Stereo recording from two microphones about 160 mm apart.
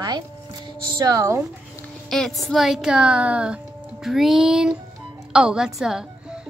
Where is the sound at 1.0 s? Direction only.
20° right (ahead or behind).